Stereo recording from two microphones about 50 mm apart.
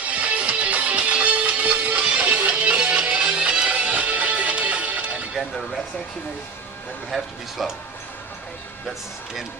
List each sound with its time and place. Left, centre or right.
0.0 s music: right
7.1 s speech: centre
8.8 s speech: centre